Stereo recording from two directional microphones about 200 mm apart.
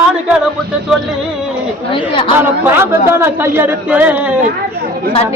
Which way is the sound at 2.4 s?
10° right (ahead or behind).